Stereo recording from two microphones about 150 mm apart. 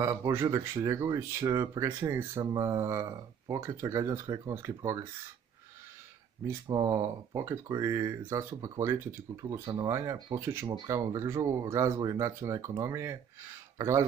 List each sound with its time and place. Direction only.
0.0 s speech: 20° right (ahead or behind)
6.7 s speech: 25° right (ahead or behind)